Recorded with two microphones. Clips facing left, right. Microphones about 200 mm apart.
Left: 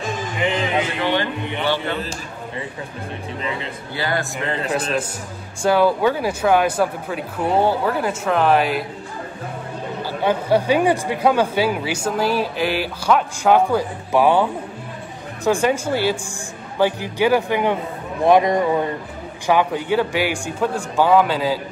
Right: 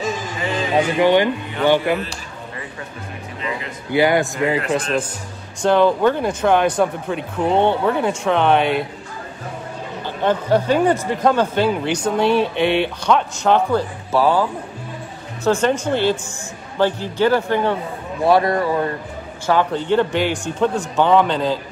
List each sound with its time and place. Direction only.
0.9 s speech: 15° right (ahead or behind)
3.4 s speech: 30° left (ahead or behind)
3.9 s speech: 15° right (ahead or behind)
4.7 s speech: 5° left (ahead or behind)
10.0 s speech: 10° left (ahead or behind)